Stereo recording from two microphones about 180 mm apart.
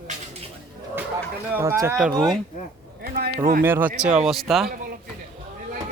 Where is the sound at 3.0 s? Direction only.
55° right (ahead or behind).